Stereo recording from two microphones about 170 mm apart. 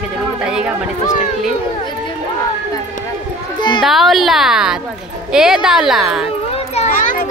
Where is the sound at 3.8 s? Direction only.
Centre (ahead or behind).